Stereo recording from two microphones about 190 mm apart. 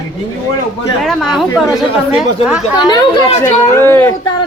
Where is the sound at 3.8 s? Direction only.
10° left (ahead or behind).